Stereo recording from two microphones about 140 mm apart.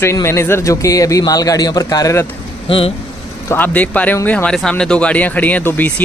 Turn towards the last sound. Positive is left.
turn(degrees=10)  # may be behind; listen again after turning